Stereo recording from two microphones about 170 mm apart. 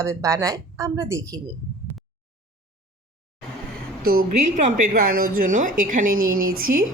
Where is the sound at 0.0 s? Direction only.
15° right (ahead or behind).